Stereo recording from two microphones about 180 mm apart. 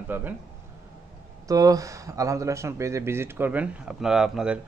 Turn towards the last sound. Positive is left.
turn(degrees=-5)  # may be behind; listen again after turning